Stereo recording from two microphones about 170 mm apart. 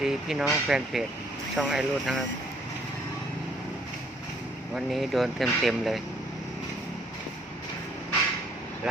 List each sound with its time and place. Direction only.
0.0 s speech: centre (ahead or behind)
4.7 s speech: centre (ahead or behind)